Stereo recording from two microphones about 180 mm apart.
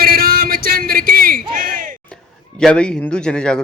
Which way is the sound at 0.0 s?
55° right (ahead or behind).